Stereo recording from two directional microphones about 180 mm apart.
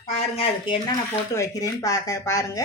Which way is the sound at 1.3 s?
15° left (ahead or behind).